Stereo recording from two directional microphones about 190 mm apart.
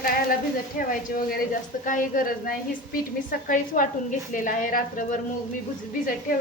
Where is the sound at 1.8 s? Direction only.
45° left (ahead or behind).